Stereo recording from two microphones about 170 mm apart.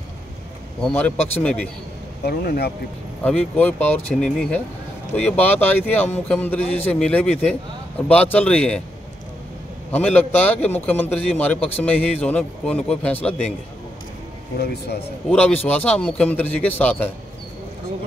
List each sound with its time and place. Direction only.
0.8 s a man's voice: 10° left (ahead or behind)
2.2 s a man's voice: 65° left (ahead or behind)
3.3 s a man's voice: 10° left (ahead or behind)
9.8 s a man's voice: 10° left (ahead or behind)
14.6 s a man's voice: 75° left (ahead or behind)
15.2 s a man's voice: 10° left (ahead or behind)